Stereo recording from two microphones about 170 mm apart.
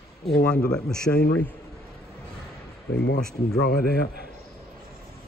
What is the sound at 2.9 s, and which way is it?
Speech, 90° left.